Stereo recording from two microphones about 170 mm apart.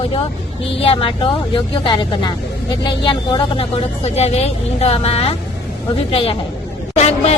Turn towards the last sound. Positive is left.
turn(degrees=40)  # may be behind; listen again after turning